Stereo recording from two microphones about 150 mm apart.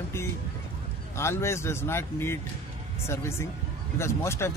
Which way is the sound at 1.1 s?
15° left (ahead or behind).